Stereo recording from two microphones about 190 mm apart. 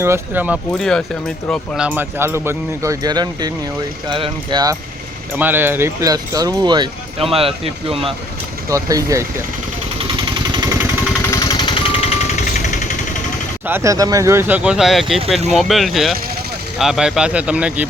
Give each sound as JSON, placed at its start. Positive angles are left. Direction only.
{"t": 0.0, "sound": "speech", "side_deg": -10}
{"t": 0.7, "sound": "speech", "side_deg": 5}
{"t": 5.4, "sound": "speech", "side_deg": -10}
{"t": 8.7, "sound": "speech", "side_deg": -15}
{"t": 10.5, "sound": "vehicle", "side_deg": -20}
{"t": 11.3, "sound": "vehicle", "side_deg": 20}
{"t": 12.3, "sound": "jackhammer", "side_deg": 40}
{"t": 13.7, "sound": "speech", "side_deg": -15}